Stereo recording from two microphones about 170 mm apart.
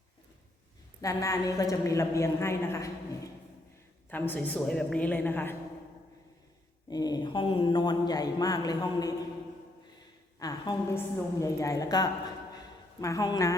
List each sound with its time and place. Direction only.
1.0 s a woman's voice: 20° left (ahead or behind)
4.1 s a woman's voice: 10° left (ahead or behind)
6.9 s speech: 25° left (ahead or behind)
10.4 s speech: 20° left (ahead or behind)
12.5 s a sound: 20° left (ahead or behind)